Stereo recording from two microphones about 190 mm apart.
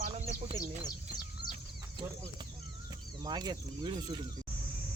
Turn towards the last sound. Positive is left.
turn(degrees=-20)  # may be behind; listen again after turning